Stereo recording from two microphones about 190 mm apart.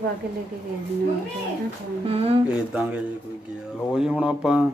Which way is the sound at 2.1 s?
30° right (ahead or behind).